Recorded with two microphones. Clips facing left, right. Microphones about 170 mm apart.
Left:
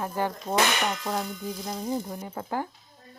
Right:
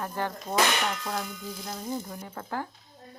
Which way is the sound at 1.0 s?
25° left (ahead or behind).